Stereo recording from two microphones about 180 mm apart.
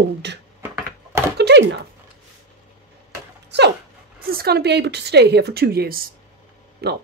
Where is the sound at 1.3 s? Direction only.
70° right (ahead or behind).